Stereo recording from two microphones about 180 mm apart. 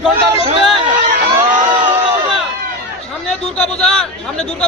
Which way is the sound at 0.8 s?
45° right (ahead or behind).